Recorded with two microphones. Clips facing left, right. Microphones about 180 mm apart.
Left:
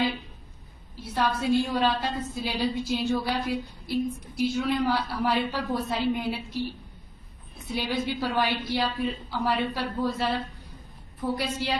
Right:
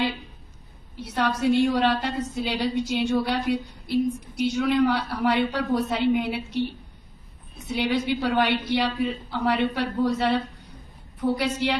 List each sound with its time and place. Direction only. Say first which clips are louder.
1.0 s a woman's voice: right 3 dB; 75° right (ahead or behind)
4.5 s a woman's voice: right 5 dB; 75° right (ahead or behind)
7.6 s a woman's voice: right 4 dB; 75° right (ahead or behind)